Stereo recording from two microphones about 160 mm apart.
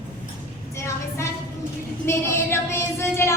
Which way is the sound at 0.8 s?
15° left (ahead or behind).